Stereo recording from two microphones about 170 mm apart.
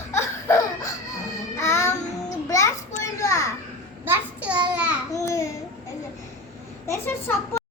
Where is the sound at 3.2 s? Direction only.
20° left (ahead or behind).